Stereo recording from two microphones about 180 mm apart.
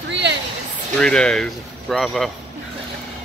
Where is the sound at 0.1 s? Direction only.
75° right (ahead or behind).